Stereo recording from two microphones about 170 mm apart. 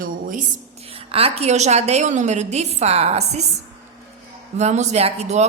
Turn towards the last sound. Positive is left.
turn(degrees=-40)  # may be behind; listen again after turning